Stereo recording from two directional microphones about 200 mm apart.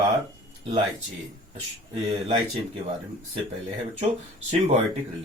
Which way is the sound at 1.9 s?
25° right (ahead or behind).